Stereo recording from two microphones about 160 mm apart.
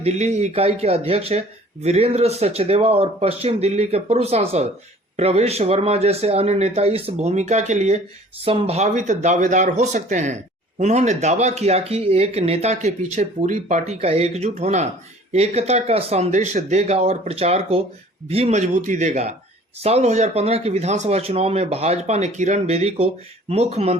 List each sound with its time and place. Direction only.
0.0 s speech: 45° right (ahead or behind)